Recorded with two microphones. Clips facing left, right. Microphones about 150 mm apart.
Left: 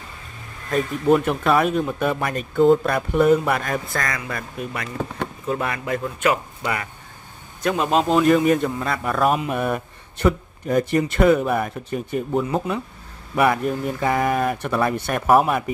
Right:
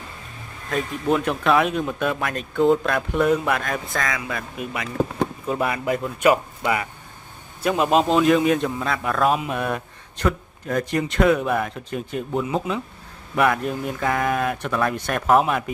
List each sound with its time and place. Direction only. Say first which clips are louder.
0.7 s speech: left 4 dB; 5° left (ahead or behind)
5.6 s speech: right 2 dB; 15° right (ahead or behind)
7.6 s speech: right 1 dB; 10° right (ahead or behind)
8.0 s speech: left 4 dB; centre (ahead or behind)